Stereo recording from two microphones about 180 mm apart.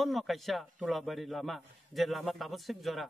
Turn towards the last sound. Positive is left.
turn(degrees=0)  # may be behind; listen again after turning